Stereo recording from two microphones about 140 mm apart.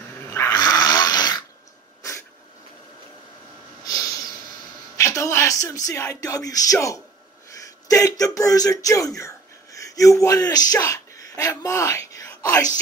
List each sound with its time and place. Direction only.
0.1 s dog: 15° left (ahead or behind)
3.8 s snort: 25° left (ahead or behind)
4.9 s speech: 20° left (ahead or behind)